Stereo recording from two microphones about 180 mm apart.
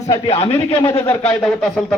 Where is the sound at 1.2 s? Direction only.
5° left (ahead or behind).